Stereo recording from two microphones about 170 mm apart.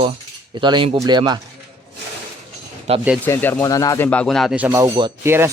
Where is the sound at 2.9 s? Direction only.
40° right (ahead or behind).